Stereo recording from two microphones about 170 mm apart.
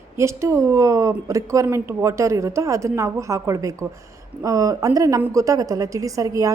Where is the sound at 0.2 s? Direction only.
15° right (ahead or behind).